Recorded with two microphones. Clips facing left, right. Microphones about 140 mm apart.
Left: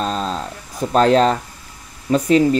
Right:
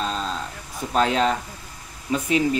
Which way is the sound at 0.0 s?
40° left (ahead or behind).